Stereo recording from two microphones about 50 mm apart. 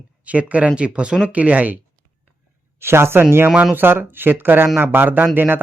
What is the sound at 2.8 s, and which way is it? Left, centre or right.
Speech, right.